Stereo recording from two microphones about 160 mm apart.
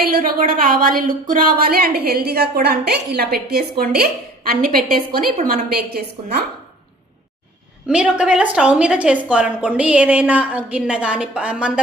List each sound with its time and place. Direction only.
0.0 s a woman's voice: 65° right (ahead or behind)
7.9 s a woman's voice: 5° right (ahead or behind)